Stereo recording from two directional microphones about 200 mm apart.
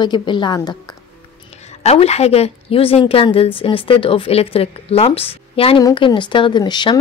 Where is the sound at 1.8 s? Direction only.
30° left (ahead or behind).